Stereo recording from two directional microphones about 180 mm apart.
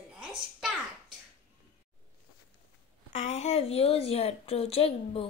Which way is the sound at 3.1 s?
40° left (ahead or behind).